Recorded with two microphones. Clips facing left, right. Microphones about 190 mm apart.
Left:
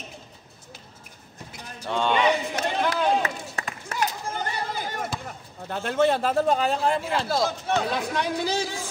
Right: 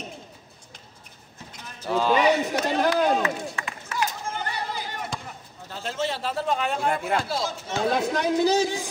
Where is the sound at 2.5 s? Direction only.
40° right (ahead or behind).